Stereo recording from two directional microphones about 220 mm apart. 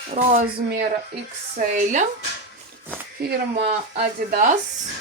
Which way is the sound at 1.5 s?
35° right (ahead or behind).